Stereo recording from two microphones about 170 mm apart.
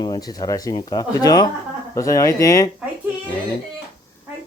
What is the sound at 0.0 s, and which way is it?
Speech, 25° left (ahead or behind).